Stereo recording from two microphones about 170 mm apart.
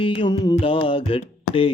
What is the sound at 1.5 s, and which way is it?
Speech, 30° left (ahead or behind).